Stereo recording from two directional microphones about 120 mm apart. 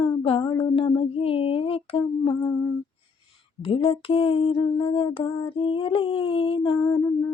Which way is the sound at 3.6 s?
50° left (ahead or behind).